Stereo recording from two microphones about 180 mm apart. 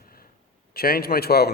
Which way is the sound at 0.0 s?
55° left (ahead or behind).